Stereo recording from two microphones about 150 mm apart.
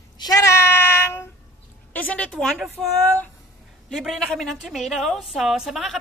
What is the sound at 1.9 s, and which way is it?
Speech, 10° left (ahead or behind).